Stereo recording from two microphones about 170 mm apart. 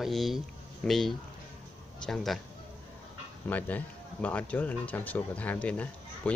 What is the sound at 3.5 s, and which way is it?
Speech, 10° left (ahead or behind).